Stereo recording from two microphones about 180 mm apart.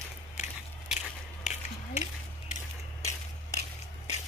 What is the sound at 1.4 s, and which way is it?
Gears, 40° left (ahead or behind).